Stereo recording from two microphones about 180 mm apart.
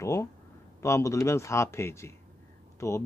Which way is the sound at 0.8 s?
15° left (ahead or behind).